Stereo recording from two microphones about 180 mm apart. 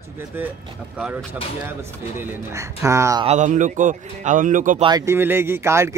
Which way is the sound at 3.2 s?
40° right (ahead or behind).